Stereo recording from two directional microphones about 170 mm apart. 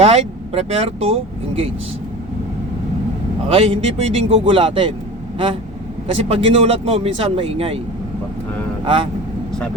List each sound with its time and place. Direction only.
0.0 s speech: 40° right (ahead or behind)
3.5 s speech: 35° right (ahead or behind)
6.1 s speech: 35° right (ahead or behind)
8.8 s speech: 30° right (ahead or behind)